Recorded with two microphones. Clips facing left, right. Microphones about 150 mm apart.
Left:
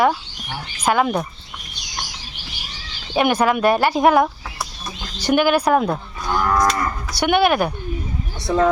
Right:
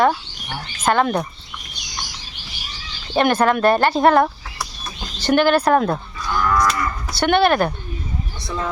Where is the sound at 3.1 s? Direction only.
10° left (ahead or behind).